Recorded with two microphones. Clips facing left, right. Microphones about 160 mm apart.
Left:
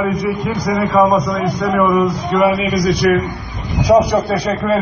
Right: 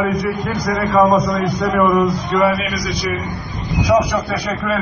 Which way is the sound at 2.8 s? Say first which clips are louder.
Left 9 dB; 60° left (ahead or behind).